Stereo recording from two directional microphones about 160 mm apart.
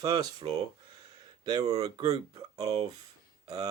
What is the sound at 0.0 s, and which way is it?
Speech, 25° right (ahead or behind).